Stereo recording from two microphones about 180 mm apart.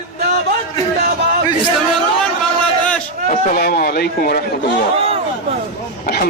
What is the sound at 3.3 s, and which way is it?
Speech, 50° left (ahead or behind).